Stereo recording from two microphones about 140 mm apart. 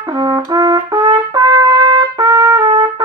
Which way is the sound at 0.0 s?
30° right (ahead or behind).